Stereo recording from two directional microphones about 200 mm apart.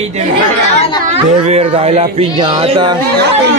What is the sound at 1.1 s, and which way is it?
Speech, 35° right (ahead or behind).